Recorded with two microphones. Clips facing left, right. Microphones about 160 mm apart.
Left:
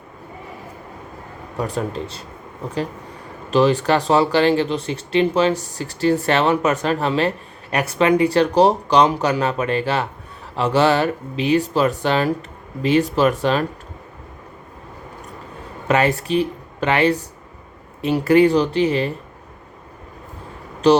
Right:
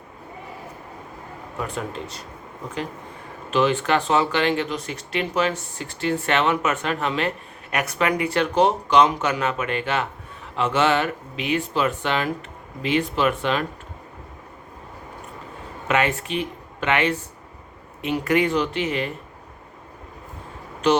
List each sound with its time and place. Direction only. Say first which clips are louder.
1.5 s speech: left 6 dB; 35° left (ahead or behind)
3.5 s speech: left 4 dB; 35° left (ahead or behind)
15.9 s speech: left 5 dB; 35° left (ahead or behind)
20.8 s speech: left 5 dB; 35° left (ahead or behind)